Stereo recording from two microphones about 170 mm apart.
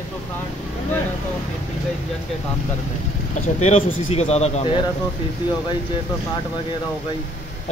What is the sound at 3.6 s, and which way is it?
Speech, 40° left (ahead or behind).